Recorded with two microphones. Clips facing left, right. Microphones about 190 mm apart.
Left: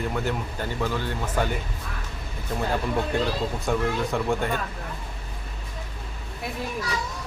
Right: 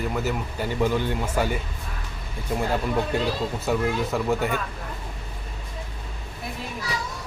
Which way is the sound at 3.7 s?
5° right (ahead or behind).